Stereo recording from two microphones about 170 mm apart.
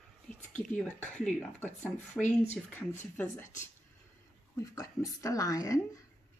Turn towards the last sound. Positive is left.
turn(degrees=20)  # may be behind; listen again after turning